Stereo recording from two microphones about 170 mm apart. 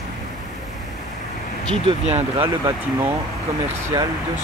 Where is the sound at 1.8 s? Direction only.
40° right (ahead or behind).